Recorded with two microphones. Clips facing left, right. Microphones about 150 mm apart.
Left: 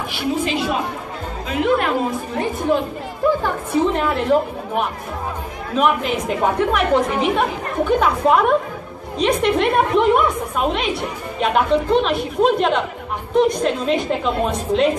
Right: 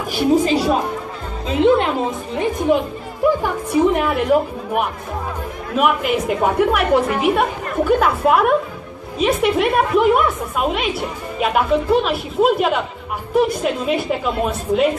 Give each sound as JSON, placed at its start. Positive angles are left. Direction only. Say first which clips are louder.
{"t": 0.1, "sound": "a woman's voice", "louder": "right 7 dB", "side_deg": -40}
{"t": 1.5, "sound": "a woman's voice", "louder": "right 3 dB", "side_deg": -25}